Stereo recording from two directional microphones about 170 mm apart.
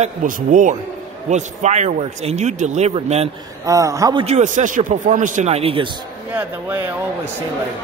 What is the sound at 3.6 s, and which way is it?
Speech, 20° right (ahead or behind).